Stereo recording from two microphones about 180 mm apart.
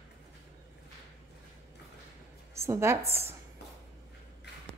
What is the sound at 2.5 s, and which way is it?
Speech, 15° right (ahead or behind).